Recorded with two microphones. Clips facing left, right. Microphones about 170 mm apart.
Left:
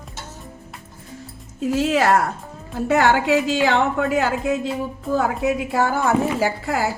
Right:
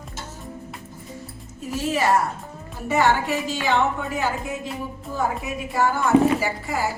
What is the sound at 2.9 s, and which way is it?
A woman's voice, 90° left.